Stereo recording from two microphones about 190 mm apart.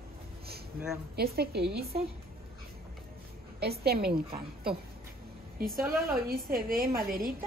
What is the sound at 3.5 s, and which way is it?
A woman's voice, 55° right (ahead or behind).